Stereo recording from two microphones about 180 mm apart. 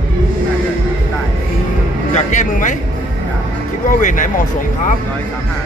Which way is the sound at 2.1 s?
45° left (ahead or behind).